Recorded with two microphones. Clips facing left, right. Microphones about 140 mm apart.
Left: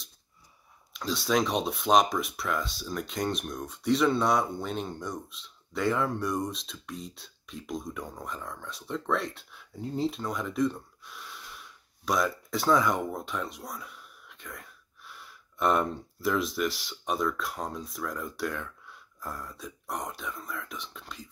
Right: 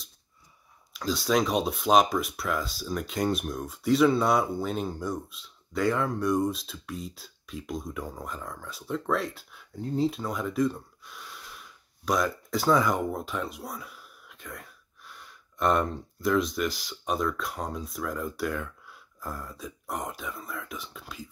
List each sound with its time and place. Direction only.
0.9 s speech: centre (ahead or behind)